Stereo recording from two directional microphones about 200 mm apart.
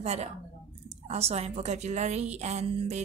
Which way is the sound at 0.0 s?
30° right (ahead or behind).